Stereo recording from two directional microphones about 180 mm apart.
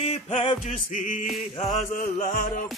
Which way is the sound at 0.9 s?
45° left (ahead or behind).